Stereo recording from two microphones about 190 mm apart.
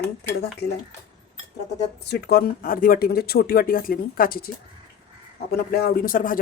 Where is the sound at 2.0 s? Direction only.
60° left (ahead or behind).